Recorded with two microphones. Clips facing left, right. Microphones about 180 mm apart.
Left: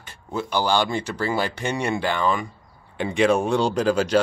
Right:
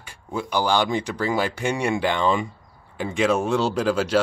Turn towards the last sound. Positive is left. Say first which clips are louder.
# left 1 dB
turn(degrees=-5)  # may be behind; listen again after turning